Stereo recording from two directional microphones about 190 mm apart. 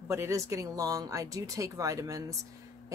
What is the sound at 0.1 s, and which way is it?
Speech, 15° right (ahead or behind).